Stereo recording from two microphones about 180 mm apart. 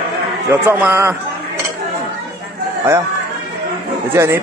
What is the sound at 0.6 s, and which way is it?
Speech, 10° right (ahead or behind).